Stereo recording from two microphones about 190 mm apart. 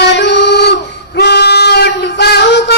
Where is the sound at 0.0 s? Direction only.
65° left (ahead or behind).